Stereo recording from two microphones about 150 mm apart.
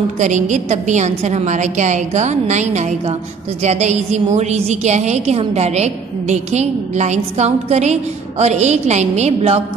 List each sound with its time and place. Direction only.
0.2 s a woman's voice: 55° right (ahead or behind)